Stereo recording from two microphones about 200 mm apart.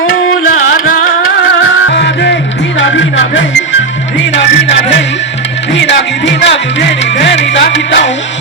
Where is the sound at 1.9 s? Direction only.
60° left (ahead or behind).